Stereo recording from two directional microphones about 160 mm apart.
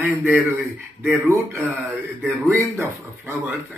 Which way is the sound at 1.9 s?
Centre (ahead or behind).